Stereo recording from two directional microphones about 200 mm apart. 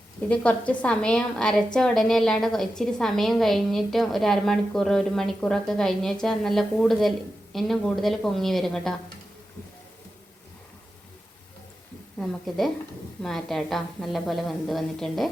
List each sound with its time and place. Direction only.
0.3 s a woman's voice: 5° left (ahead or behind)
12.2 s a woman's voice: centre (ahead or behind)